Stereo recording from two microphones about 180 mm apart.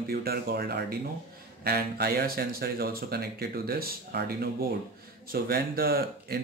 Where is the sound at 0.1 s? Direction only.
55° right (ahead or behind).